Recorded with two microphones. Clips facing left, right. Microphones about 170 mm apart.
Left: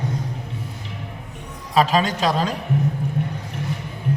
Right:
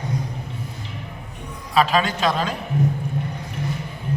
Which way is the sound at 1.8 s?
40° left (ahead or behind).